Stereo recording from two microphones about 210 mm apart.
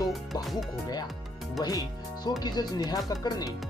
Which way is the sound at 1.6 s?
20° left (ahead or behind).